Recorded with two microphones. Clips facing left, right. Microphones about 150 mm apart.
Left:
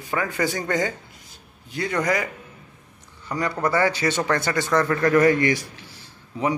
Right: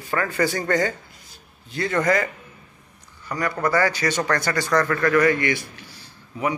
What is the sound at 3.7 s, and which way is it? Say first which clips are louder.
A man's voice: even; 25° left (ahead or behind).